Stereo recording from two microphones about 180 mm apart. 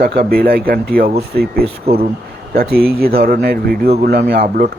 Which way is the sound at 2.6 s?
60° right (ahead or behind).